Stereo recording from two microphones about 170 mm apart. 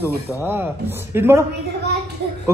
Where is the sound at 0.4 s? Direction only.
10° right (ahead or behind).